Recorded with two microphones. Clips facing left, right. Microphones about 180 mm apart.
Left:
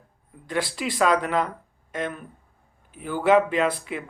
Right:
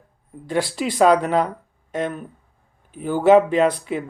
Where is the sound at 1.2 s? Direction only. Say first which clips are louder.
Right 5 dB; 40° right (ahead or behind).